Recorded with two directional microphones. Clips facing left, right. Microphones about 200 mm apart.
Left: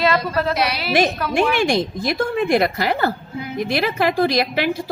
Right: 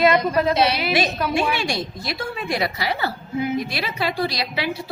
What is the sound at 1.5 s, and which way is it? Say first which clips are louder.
A woman's voice: left 7 dB; 50° left (ahead or behind).